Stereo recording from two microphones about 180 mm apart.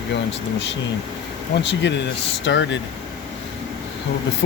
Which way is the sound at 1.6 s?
75° left (ahead or behind).